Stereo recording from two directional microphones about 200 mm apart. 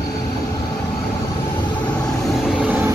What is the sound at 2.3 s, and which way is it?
Vehicle, centre (ahead or behind).